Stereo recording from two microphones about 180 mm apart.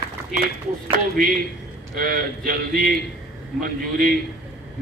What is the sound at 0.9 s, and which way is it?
A man's voice, 50° right (ahead or behind).